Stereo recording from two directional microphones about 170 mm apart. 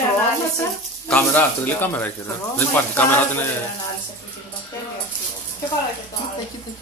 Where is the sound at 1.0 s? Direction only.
10° left (ahead or behind).